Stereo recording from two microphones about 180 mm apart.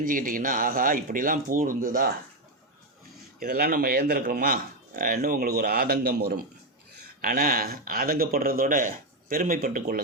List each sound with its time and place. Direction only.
0.0 s a man's voice: 50° right (ahead or behind)
3.4 s a man's voice: 55° right (ahead or behind)
7.2 s a man's voice: 50° right (ahead or behind)